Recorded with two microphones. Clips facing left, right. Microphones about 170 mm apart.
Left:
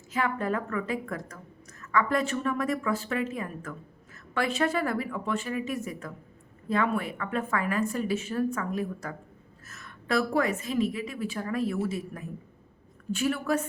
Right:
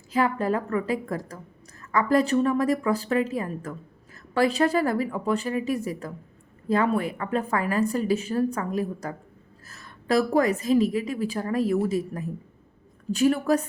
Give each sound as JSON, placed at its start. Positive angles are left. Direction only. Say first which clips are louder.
{"t": 0.1, "sound": "a woman's voice", "louder": "right 5 dB", "side_deg": -35}